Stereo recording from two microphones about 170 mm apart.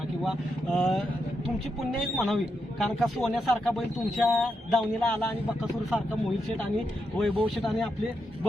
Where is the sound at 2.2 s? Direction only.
Centre (ahead or behind).